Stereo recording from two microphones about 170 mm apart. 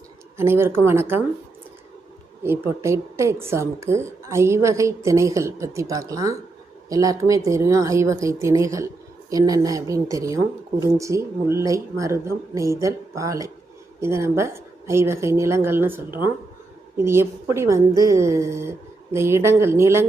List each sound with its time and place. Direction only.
0.3 s speech: 15° right (ahead or behind)
2.4 s speech: 15° right (ahead or behind)